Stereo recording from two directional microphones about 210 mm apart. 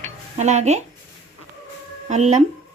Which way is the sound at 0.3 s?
35° right (ahead or behind).